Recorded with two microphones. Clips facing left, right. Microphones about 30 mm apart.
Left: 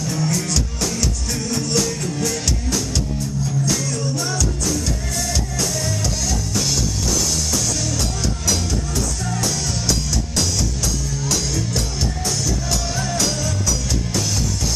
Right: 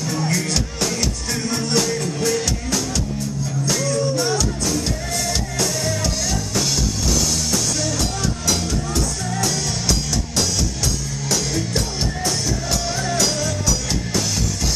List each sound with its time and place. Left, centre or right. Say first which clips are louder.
0.0 s music: even; right
9.3 s music: right 1 dB; centre
12.9 s music: right 1 dB; right